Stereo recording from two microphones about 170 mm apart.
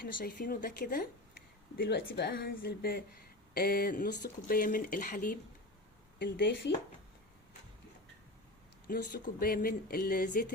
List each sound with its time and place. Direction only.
0.0 s speech: 55° left (ahead or behind)
1.7 s speech: 70° left (ahead or behind); by 5.4 s 50° left (ahead or behind)
6.1 s speech: 90° left
8.9 s speech: 75° left (ahead or behind)
9.2 s speech: 55° left (ahead or behind)